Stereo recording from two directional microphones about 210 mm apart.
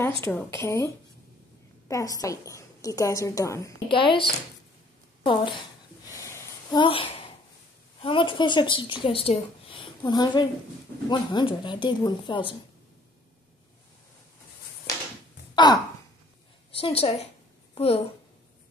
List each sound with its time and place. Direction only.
0.2 s a woman's voice: 10° left (ahead or behind)
6.0 s a sound: 15° left (ahead or behind)
8.0 s a woman's voice: 25° left (ahead or behind)
15.5 s sigh: 20° left (ahead or behind)
16.7 s a woman's voice: 25° left (ahead or behind)